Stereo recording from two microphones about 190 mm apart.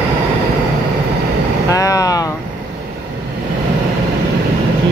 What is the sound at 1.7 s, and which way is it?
Vehicle, 20° left (ahead or behind).